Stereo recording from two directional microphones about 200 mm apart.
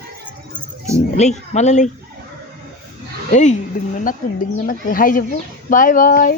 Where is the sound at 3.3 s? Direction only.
35° left (ahead or behind).